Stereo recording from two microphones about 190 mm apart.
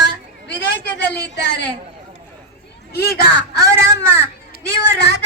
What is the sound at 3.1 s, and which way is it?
Speech, 55° left (ahead or behind).